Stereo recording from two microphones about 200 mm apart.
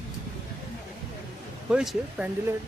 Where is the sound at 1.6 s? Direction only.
5° right (ahead or behind).